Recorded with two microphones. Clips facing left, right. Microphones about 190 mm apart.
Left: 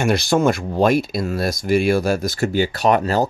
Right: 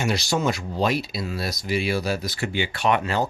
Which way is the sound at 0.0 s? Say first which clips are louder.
Left 7 dB; 55° left (ahead or behind).